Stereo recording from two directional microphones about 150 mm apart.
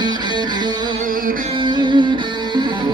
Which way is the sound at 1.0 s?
70° right (ahead or behind).